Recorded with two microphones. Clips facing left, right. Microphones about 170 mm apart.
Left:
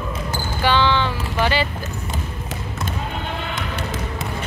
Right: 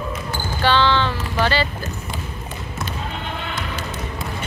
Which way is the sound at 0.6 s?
15° left (ahead or behind).